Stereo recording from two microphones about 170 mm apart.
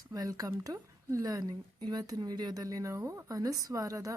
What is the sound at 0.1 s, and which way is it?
Speech, 20° right (ahead or behind).